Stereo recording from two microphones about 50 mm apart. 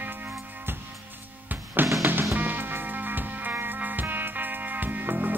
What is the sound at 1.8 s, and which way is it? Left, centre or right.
Music, right.